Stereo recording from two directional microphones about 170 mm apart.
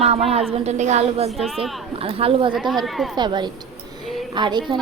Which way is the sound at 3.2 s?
25° right (ahead or behind).